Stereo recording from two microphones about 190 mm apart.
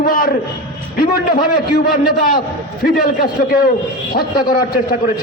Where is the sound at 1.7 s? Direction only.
50° left (ahead or behind).